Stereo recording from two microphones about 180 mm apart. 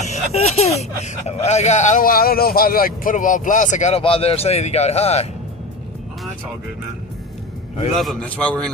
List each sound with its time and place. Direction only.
0.0 s a sound: 40° left (ahead or behind)
0.7 s speech: 35° left (ahead or behind)
7.9 s a man's voice: centre (ahead or behind)